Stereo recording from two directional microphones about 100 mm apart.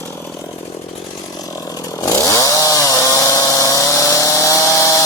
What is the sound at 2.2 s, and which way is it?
Chainsaw, 35° left (ahead or behind).